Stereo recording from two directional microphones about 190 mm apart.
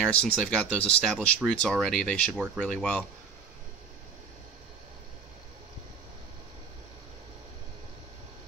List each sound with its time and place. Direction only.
0.0 s speech: 5° left (ahead or behind)